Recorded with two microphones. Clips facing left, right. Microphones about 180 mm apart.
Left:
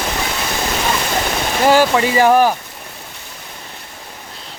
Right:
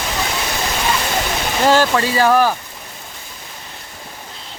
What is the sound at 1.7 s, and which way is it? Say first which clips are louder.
Speech: left 2 dB; 15° left (ahead or behind).